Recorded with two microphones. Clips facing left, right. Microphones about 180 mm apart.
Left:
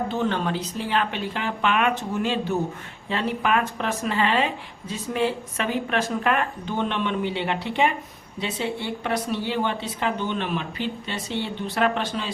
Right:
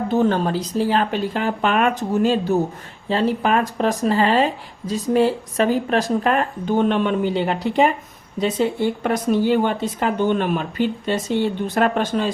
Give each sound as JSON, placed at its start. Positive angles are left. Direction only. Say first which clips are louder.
{"t": 0.1, "sound": "speech", "louder": "right 6 dB", "side_deg": -40}